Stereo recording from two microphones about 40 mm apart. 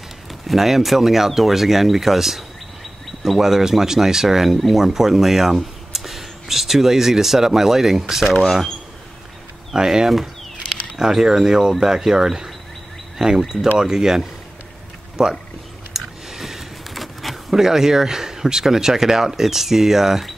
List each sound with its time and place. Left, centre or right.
0.5 s speech: centre
9.8 s speech: centre
15.9 s a sound: centre
17.6 s speech: centre